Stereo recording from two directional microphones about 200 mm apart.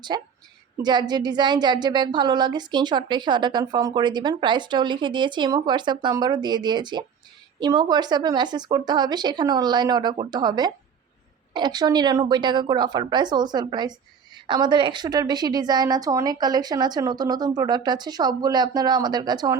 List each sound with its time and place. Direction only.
0.1 s a woman's voice: 20° right (ahead or behind)